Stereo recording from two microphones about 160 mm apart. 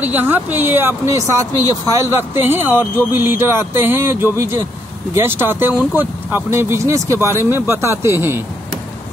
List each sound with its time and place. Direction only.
0.0 s speech: 10° right (ahead or behind)